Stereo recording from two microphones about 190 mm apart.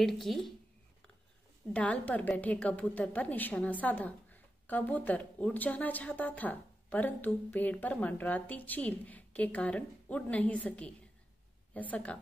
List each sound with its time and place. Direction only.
0.0 s speech: centre (ahead or behind)
1.7 s a woman's voice: 5° left (ahead or behind)